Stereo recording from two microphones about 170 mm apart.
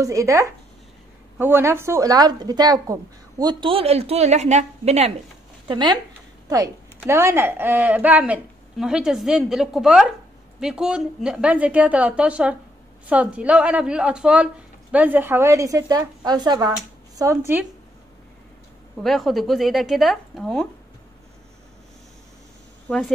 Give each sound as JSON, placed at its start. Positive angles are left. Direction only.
{"t": 0.0, "sound": "speech", "side_deg": -20}
{"t": 5.7, "sound": "speech", "side_deg": -25}
{"t": 7.0, "sound": "a woman's voice", "side_deg": -15}
{"t": 19.0, "sound": "a woman's voice", "side_deg": 0}
{"t": 22.8, "sound": "a woman's voice", "side_deg": 5}